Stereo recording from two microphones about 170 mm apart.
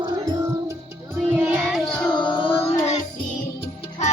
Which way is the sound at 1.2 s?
5° right (ahead or behind).